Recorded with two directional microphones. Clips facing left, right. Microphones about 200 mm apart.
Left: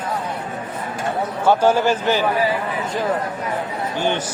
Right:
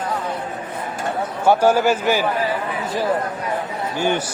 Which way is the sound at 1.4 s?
10° right (ahead or behind).